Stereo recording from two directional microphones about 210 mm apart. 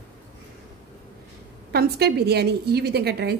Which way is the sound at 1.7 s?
50° right (ahead or behind).